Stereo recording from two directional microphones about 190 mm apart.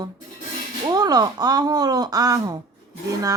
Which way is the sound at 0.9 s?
20° right (ahead or behind).